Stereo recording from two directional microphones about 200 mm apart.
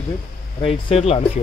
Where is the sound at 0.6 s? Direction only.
30° left (ahead or behind).